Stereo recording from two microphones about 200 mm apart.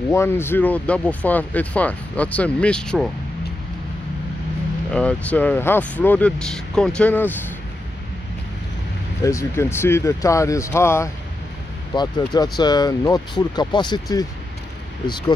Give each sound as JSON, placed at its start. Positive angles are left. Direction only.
{"t": 0.1, "sound": "speech", "side_deg": 10}
{"t": 4.9, "sound": "speech", "side_deg": 5}
{"t": 9.2, "sound": "speech", "side_deg": 15}